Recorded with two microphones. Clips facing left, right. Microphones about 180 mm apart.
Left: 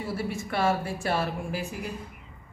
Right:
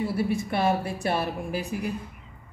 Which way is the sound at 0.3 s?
15° right (ahead or behind).